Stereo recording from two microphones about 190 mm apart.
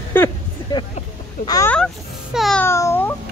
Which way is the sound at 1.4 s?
20° left (ahead or behind).